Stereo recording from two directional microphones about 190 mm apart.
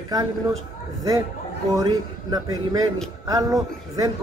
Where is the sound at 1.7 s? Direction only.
20° right (ahead or behind).